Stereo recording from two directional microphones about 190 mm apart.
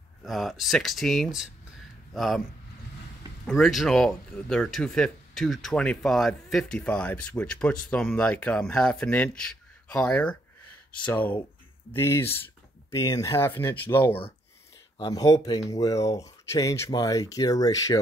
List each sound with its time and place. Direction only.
0.2 s speech: centre (ahead or behind)
3.4 s speech: centre (ahead or behind); by 18.0 s 20° left (ahead or behind)